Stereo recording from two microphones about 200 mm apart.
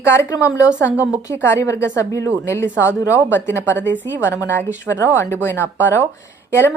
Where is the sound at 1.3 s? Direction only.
10° left (ahead or behind).